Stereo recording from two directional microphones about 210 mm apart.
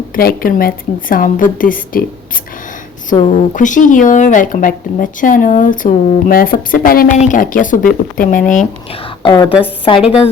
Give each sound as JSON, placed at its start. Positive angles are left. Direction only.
{"t": 0.2, "sound": "a woman's voice", "side_deg": 45}
{"t": 3.2, "sound": "speech", "side_deg": 35}
{"t": 9.2, "sound": "a woman's voice", "side_deg": 20}